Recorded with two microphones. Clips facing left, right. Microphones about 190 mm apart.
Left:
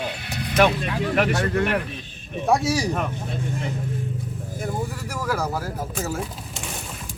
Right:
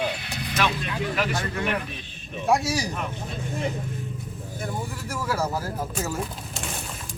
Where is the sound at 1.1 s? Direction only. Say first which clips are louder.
Left 9 dB; 65° left (ahead or behind).